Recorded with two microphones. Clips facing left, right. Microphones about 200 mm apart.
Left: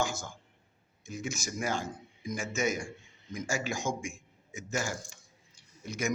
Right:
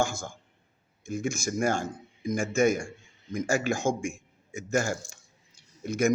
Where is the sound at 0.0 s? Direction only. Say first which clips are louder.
Right 4 dB; 50° right (ahead or behind).